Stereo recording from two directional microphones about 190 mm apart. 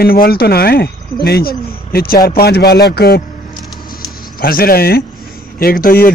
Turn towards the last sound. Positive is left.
turn(degrees=50)  # may be behind; listen again after turning